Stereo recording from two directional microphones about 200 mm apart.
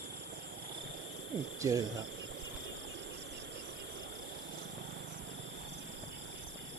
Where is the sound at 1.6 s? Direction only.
15° right (ahead or behind).